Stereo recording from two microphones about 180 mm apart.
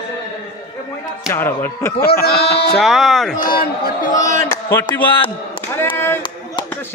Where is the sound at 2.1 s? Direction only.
60° left (ahead or behind).